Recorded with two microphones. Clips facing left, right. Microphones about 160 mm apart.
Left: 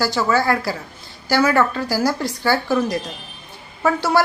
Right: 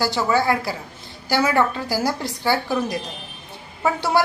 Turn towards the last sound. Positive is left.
turn(degrees=-20)  # may be behind; listen again after turning